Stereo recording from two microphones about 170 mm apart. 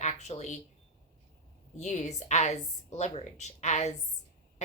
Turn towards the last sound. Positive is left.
turn(degrees=40)  # may be behind; listen again after turning